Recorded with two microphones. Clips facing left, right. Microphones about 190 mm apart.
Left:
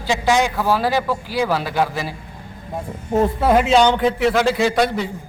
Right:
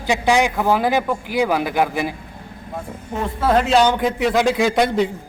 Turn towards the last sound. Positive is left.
turn(degrees=-20)  # may be behind; listen again after turning